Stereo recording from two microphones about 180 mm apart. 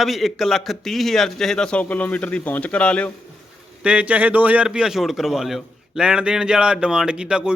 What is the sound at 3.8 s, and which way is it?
A man's voice, 5° right (ahead or behind).